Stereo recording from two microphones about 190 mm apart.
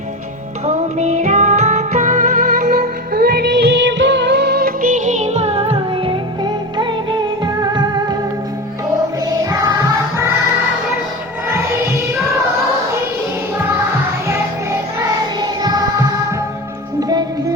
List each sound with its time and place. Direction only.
0.6 s music: 35° right (ahead or behind)
14.3 s music: 15° right (ahead or behind)
17.0 s music: 20° right (ahead or behind)